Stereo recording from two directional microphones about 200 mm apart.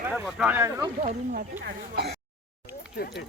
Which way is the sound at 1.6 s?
55° right (ahead or behind).